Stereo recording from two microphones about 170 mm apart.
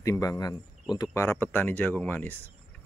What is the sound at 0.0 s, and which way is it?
A man's voice, 20° left (ahead or behind).